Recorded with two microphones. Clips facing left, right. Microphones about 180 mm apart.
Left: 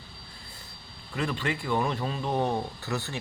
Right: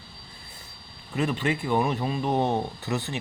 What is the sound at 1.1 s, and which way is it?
Speech, 20° right (ahead or behind).